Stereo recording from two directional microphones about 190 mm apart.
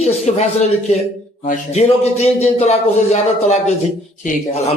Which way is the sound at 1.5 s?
35° left (ahead or behind).